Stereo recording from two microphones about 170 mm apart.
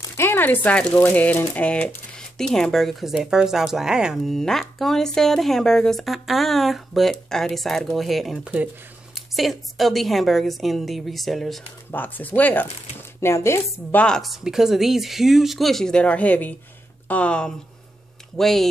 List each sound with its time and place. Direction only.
0.2 s speech: 10° left (ahead or behind)
14.0 s speech: centre (ahead or behind)